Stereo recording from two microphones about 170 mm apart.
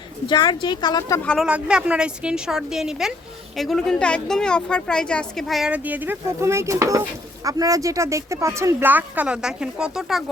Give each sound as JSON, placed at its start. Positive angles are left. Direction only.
{"t": 0.3, "sound": "speech", "side_deg": 25}
{"t": 1.2, "sound": "a woman's voice", "side_deg": 5}
{"t": 1.5, "sound": "a woman's voice", "side_deg": -5}